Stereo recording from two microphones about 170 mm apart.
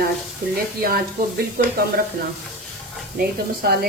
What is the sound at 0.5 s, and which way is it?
Speech, 60° right (ahead or behind).